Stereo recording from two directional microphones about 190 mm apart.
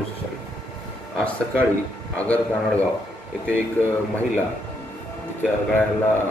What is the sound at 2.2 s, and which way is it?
Speech, 5° left (ahead or behind).